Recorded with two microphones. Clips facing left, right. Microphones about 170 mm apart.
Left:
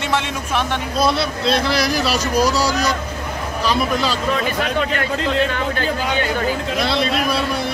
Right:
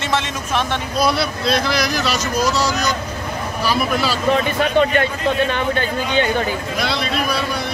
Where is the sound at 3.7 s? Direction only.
5° right (ahead or behind).